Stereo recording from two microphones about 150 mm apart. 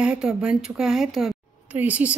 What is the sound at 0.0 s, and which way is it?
A woman's voice, 5° right (ahead or behind).